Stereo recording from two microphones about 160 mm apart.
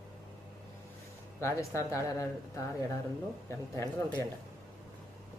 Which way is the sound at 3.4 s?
15° left (ahead or behind).